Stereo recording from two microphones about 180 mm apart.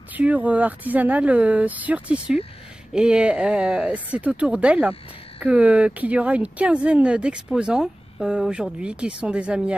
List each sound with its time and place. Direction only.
0.1 s speech: 10° right (ahead or behind)